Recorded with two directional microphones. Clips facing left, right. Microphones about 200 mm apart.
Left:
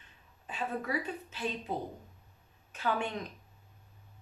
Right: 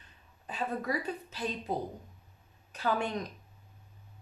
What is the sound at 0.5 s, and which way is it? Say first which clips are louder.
Speech: right 2 dB; 40° right (ahead or behind).